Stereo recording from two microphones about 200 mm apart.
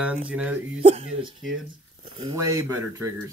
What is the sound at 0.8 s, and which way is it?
Speech, 30° right (ahead or behind).